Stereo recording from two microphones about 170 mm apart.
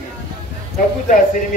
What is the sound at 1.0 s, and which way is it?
Speech, 50° left (ahead or behind).